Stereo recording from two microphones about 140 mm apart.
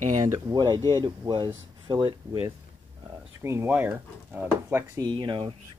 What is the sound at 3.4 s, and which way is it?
Speech, 15° right (ahead or behind).